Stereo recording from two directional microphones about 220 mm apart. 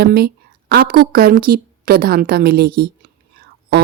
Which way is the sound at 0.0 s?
45° right (ahead or behind).